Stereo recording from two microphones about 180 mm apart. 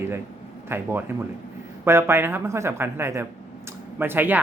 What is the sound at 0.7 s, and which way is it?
Speech, 10° right (ahead or behind).